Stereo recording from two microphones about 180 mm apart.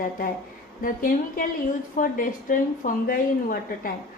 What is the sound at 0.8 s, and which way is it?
A woman's voice, 50° left (ahead or behind).